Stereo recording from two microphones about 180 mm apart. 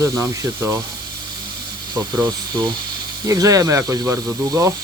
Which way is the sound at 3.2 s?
20° right (ahead or behind).